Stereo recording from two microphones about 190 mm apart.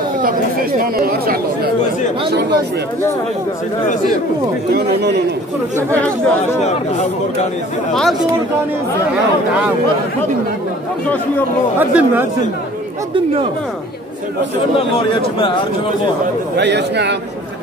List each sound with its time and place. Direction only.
0.9 s speech: 50° right (ahead or behind)
7.9 s speech: centre (ahead or behind)
11.9 s speech: 10° right (ahead or behind)
15.0 s a man's voice: 25° left (ahead or behind)
16.5 s speech: 65° right (ahead or behind)